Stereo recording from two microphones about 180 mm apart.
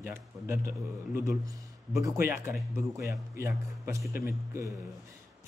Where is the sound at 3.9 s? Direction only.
15° right (ahead or behind).